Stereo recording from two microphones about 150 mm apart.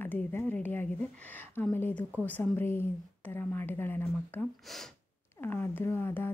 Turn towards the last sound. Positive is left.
turn(degrees=15)  # may be behind; listen again after turning